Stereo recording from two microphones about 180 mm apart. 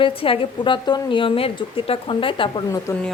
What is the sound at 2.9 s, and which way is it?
Speech, 15° left (ahead or behind).